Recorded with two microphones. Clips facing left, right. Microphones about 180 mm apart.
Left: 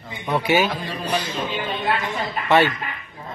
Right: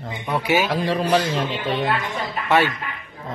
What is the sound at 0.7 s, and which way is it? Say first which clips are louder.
Speech: right 7 dB; 85° right.